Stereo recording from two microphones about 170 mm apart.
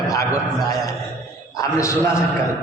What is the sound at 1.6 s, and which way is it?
Speech, 15° left (ahead or behind).